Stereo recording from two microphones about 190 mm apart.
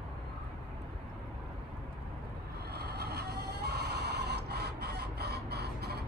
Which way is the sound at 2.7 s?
60° right (ahead or behind).